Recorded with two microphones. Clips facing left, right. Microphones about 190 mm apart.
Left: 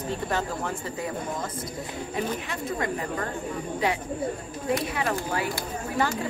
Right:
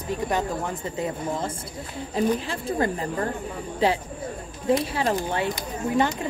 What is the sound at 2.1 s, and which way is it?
A woman's voice, 30° right (ahead or behind).